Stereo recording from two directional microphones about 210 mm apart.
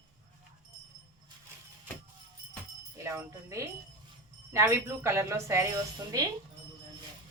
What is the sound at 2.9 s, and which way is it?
A woman's voice, 10° right (ahead or behind).